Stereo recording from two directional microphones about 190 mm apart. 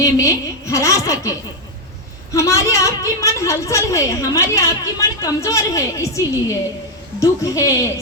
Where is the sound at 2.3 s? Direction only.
15° left (ahead or behind).